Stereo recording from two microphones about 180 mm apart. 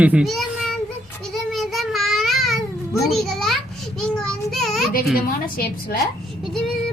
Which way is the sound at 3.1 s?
Centre (ahead or behind).